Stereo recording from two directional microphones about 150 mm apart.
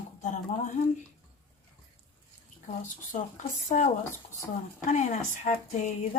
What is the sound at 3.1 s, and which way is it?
Speech, 55° left (ahead or behind).